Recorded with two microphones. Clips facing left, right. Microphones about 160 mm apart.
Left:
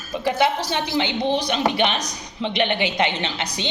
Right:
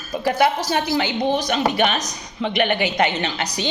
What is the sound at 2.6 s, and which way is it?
Speech, 45° right (ahead or behind).